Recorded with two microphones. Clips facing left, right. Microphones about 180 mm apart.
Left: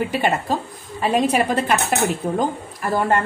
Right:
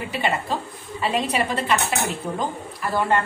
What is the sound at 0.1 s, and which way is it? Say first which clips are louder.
A woman's voice: left 4 dB; 45° left (ahead or behind).